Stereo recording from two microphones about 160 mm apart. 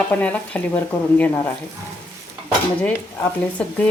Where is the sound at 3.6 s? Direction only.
5° left (ahead or behind).